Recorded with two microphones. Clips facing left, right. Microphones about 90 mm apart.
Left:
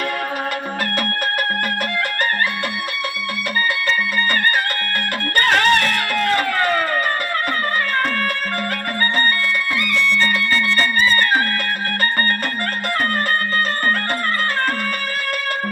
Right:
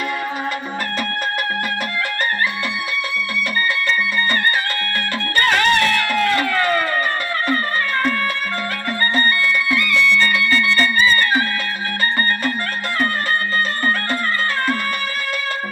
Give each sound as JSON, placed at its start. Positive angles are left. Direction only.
{"t": 5.4, "sound": "music", "side_deg": 45}
{"t": 9.1, "sound": "music", "side_deg": 40}